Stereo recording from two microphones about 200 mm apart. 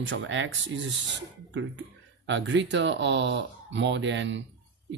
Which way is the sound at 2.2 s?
65° right (ahead or behind).